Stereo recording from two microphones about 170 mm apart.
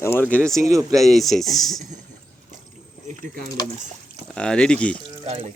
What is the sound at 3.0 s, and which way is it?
Speech, 55° right (ahead or behind).